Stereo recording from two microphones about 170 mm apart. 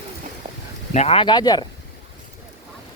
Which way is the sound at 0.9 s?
35° left (ahead or behind).